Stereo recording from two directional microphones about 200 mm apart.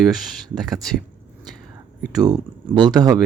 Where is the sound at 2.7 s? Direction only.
20° right (ahead or behind).